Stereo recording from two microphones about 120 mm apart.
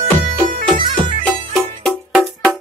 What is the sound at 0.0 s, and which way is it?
Bagpipes, 75° right (ahead or behind).